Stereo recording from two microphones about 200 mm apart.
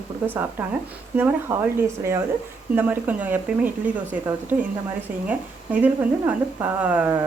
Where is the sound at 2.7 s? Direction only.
10° right (ahead or behind).